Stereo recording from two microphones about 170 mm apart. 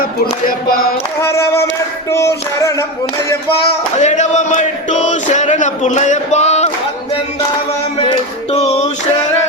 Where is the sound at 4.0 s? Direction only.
45° left (ahead or behind).